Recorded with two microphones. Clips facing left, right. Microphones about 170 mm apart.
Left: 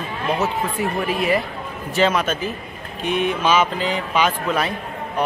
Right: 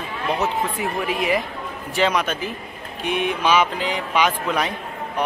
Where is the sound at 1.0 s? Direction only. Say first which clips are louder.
Left 1 dB; 15° right (ahead or behind).